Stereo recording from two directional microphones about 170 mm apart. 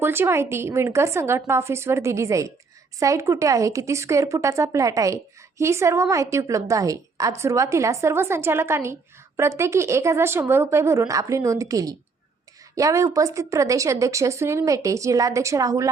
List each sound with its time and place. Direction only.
0.0 s speech: 15° right (ahead or behind)